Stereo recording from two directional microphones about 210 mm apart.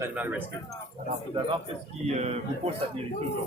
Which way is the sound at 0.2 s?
10° right (ahead or behind).